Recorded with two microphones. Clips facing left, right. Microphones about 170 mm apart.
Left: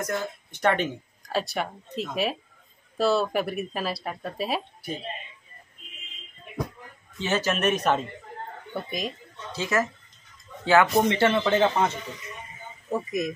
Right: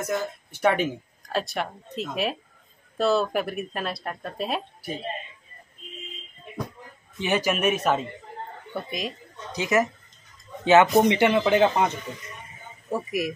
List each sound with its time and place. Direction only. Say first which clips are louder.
0.0 s speech: right 2 dB; 5° right (ahead or behind)
7.2 s speech: right 1 dB; 15° right (ahead or behind)
9.5 s speech: right 3 dB; 20° right (ahead or behind)
12.9 s speech: even; 10° right (ahead or behind)